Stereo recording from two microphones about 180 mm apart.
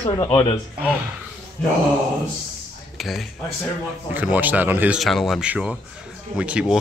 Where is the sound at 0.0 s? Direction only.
30° left (ahead or behind).